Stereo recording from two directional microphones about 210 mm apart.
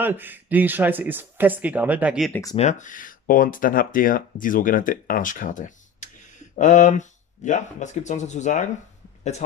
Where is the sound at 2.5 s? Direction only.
35° left (ahead or behind).